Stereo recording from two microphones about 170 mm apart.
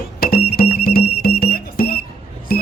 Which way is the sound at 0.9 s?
60° left (ahead or behind).